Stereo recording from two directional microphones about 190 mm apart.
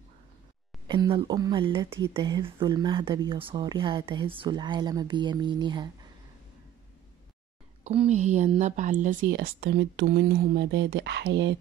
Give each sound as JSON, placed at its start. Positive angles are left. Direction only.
{"t": 0.8, "sound": "speech", "side_deg": -25}
{"t": 7.8, "sound": "a woman's voice", "side_deg": -35}